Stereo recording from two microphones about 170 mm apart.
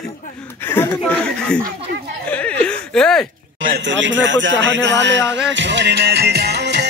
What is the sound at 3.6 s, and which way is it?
Speech, 80° right.